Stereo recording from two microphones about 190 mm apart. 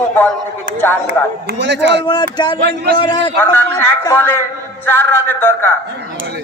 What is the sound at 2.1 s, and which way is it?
Speech, 20° left (ahead or behind).